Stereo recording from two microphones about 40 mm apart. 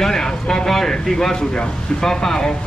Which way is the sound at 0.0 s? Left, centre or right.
Centre.